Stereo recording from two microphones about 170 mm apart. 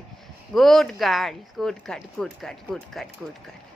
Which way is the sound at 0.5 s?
Centre (ahead or behind).